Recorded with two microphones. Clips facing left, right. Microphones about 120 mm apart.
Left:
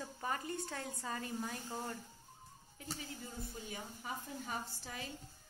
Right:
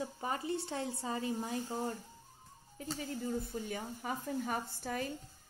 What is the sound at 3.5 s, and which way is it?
Speech, 55° right (ahead or behind).